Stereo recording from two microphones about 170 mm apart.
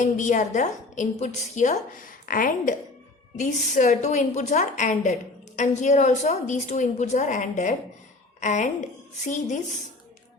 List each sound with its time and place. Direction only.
0.0 s a woman's voice: 45° left (ahead or behind)